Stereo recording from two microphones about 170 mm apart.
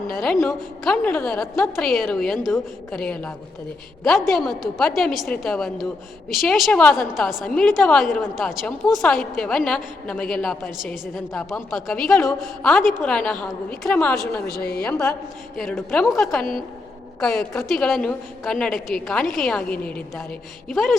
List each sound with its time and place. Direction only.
0.1 s a woman's voice: centre (ahead or behind)
14.6 s a woman's voice: 65° left (ahead or behind)
14.8 s a woman's voice: centre (ahead or behind)